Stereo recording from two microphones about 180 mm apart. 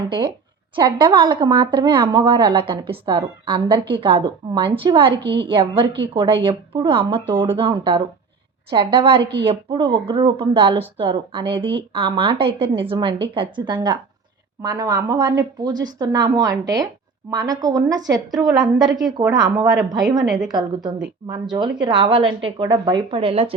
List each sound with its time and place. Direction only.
0.0 s speech: 25° right (ahead or behind)
5.1 s a woman's voice: 70° right (ahead or behind)
5.5 s speech: 30° right (ahead or behind)
9.1 s a woman's voice: 70° right (ahead or behind)
9.5 s speech: 30° right (ahead or behind)
20.2 s a woman's voice: 5° right (ahead or behind)
20.5 s speech: 20° right (ahead or behind)